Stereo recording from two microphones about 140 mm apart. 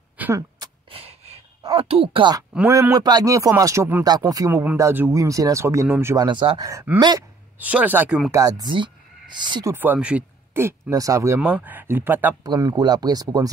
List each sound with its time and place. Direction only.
0.2 s a sound: 20° right (ahead or behind)
0.8 s gasp: 45° right (ahead or behind)
1.7 s speech: 45° right (ahead or behind)
2.7 s speech: 25° right (ahead or behind)
6.2 s speech: 35° right (ahead or behind)
6.7 s speech: 20° right (ahead or behind)
7.0 s speech: 30° right (ahead or behind)
7.5 s speech: 10° right (ahead or behind)
8.3 s speech: 25° right (ahead or behind)
9.7 s speech: 15° right (ahead or behind)
12.4 s speech: 25° right (ahead or behind)